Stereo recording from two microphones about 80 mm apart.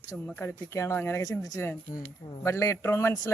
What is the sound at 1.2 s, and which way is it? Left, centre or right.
Speech, left.